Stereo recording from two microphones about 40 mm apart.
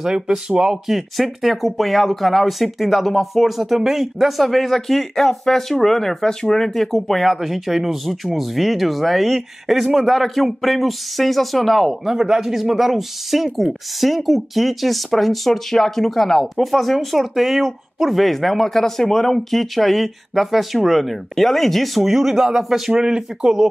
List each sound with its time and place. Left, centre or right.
0.0 s speech: centre
0.8 s speech: centre
23.0 s speech: centre